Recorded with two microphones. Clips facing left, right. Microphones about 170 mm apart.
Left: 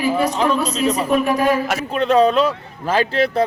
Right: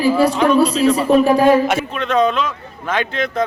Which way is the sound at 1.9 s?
35° left (ahead or behind).